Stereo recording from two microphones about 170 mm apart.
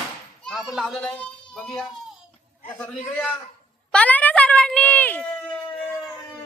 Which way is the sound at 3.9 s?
10° left (ahead or behind).